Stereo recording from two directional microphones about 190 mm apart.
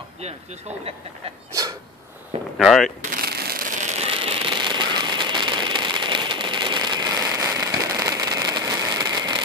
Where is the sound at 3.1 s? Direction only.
55° right (ahead or behind).